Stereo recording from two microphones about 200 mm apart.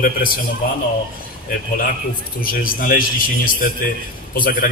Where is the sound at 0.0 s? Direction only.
45° left (ahead or behind).